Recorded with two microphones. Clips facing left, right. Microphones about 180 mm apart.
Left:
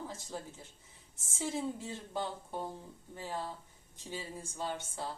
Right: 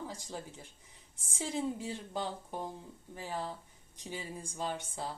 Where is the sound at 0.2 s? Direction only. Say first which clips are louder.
Even; 15° right (ahead or behind).